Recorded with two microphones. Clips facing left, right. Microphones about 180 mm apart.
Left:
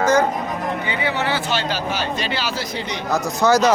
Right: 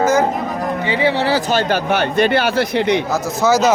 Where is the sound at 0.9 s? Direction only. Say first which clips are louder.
Right 8 dB; 30° right (ahead or behind); by 3.0 s 60° right (ahead or behind).